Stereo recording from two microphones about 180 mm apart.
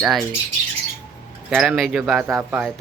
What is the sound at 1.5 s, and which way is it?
Speech, 5° right (ahead or behind).